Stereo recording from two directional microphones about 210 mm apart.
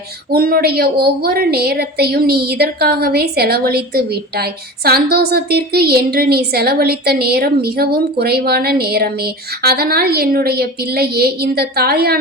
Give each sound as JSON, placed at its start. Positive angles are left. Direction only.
{"t": 0.3, "sound": "a woman's voice", "side_deg": -45}